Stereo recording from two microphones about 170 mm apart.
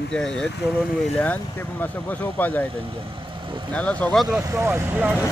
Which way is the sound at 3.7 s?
10° left (ahead or behind).